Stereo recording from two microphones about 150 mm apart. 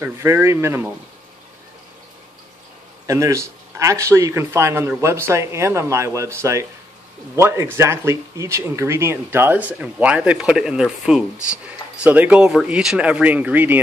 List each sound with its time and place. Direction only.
0.0 s speech: 15° right (ahead or behind)
3.1 s speech: 20° right (ahead or behind)